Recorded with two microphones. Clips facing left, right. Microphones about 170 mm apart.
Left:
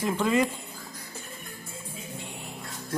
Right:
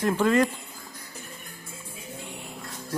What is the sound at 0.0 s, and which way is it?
Speech, 5° left (ahead or behind).